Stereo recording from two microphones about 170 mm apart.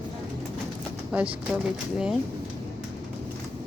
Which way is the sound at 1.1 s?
10° right (ahead or behind).